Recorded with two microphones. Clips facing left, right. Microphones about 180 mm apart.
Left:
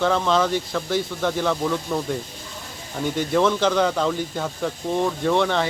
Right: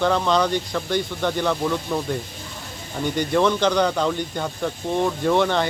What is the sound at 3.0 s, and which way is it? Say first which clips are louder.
Speech: even; centre (ahead or behind).